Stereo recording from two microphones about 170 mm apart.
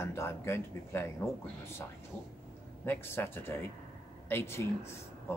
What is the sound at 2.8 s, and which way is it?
Speech, 10° left (ahead or behind).